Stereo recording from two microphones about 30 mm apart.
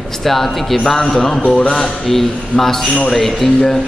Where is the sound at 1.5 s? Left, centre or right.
Left.